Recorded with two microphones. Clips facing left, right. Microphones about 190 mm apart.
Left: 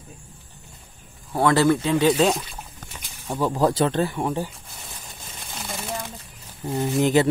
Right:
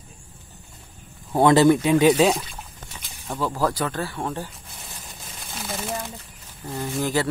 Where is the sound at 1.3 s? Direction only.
20° right (ahead or behind).